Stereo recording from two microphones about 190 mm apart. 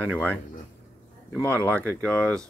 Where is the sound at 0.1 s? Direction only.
5° left (ahead or behind).